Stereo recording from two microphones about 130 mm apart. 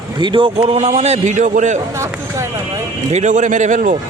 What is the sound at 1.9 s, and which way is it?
Speech, 20° right (ahead or behind).